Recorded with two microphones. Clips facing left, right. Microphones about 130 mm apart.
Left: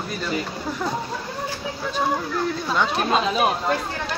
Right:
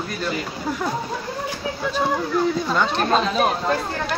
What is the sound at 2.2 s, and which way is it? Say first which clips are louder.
Speech: right 4 dB; 5° right (ahead or behind).